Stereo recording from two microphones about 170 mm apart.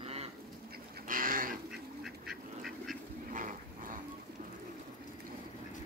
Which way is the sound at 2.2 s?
Centre (ahead or behind).